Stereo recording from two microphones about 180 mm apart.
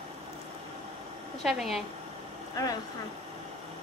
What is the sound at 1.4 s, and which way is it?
Speech, centre (ahead or behind).